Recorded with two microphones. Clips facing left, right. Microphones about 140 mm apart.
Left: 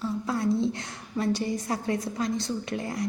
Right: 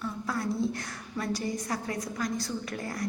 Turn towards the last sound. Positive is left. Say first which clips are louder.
# left 4 dB
turn(degrees=20)  # may be behind; listen again after turning